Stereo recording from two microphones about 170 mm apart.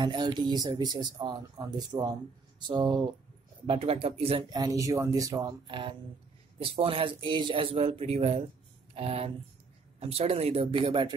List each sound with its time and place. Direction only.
0.0 s a man's voice: 25° right (ahead or behind)
4.5 s a man's voice: 20° right (ahead or behind)